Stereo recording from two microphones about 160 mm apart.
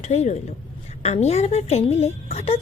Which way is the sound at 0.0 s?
45° left (ahead or behind).